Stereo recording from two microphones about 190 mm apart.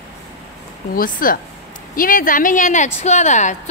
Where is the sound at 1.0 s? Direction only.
45° left (ahead or behind).